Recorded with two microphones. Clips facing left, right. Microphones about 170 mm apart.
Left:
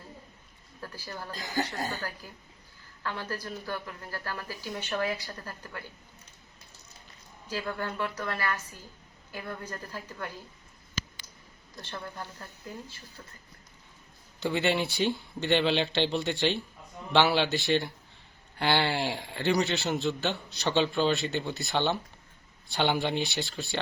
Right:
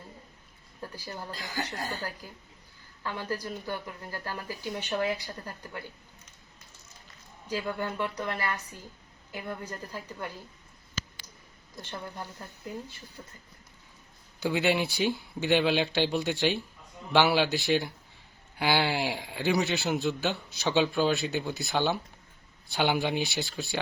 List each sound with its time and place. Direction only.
0.8 s speech: 15° right (ahead or behind)
3.0 s speech: 15° right (ahead or behind)
7.4 s speech: 15° right (ahead or behind)
11.8 s speech: 15° right (ahead or behind)
14.4 s a man's voice: centre (ahead or behind)